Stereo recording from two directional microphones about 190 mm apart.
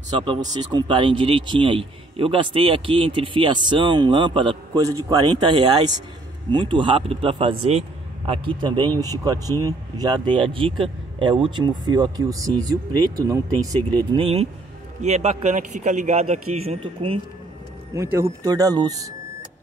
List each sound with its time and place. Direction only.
0.5 s a man's voice: 20° right (ahead or behind)
14.1 s speech: 30° right (ahead or behind)
17.9 s a man's voice: 15° right (ahead or behind)